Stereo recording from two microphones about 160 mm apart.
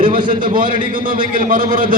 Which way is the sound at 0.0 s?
60° right (ahead or behind).